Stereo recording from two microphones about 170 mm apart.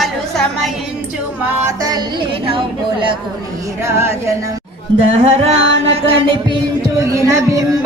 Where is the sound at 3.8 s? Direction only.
15° right (ahead or behind).